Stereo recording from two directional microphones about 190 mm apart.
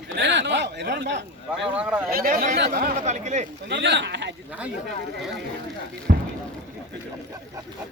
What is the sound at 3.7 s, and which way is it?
Speech, 65° right (ahead or behind).